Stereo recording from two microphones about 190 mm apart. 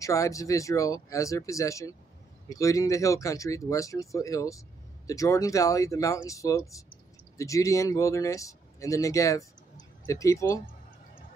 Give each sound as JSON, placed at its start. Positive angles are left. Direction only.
{"t": 0.0, "sound": "speech", "side_deg": 15}